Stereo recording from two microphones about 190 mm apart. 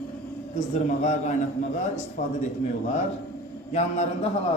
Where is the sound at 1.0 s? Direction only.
40° left (ahead or behind).